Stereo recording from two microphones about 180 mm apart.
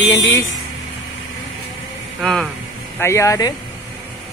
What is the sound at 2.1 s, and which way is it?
Speech, centre (ahead or behind).